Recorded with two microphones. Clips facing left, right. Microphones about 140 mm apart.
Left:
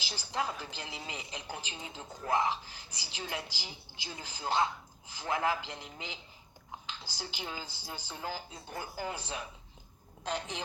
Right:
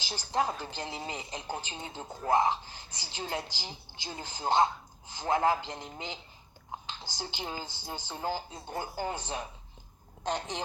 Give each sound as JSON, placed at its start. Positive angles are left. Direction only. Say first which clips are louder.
{"t": 0.1, "sound": "speech", "louder": "right 5 dB", "side_deg": -35}
{"t": 6.7, "sound": "typing", "louder": "right 3 dB", "side_deg": -30}
{"t": 7.0, "sound": "speech", "louder": "right 3 dB", "side_deg": -25}